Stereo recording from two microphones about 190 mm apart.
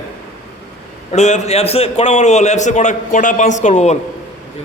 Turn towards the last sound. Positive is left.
turn(degrees=40)  # may be behind; listen again after turning